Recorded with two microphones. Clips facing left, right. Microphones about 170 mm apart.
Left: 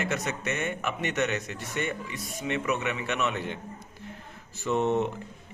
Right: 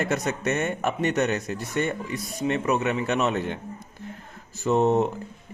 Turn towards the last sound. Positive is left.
turn(degrees=-40)  # may be behind; listen again after turning